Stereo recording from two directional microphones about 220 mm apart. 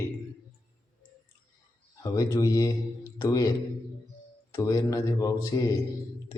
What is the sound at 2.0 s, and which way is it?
Speech, 15° left (ahead or behind).